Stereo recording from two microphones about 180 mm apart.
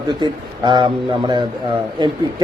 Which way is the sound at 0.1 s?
25° right (ahead or behind).